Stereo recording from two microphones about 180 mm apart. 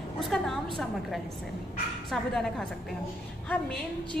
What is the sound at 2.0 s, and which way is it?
A woman's voice, centre (ahead or behind).